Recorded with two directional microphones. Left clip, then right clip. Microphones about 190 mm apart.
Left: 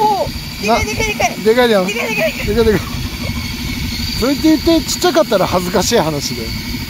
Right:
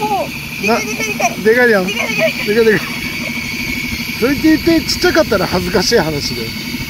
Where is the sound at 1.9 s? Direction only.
20° left (ahead or behind).